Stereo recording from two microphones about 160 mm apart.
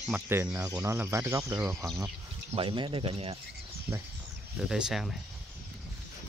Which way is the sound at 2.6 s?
30° right (ahead or behind).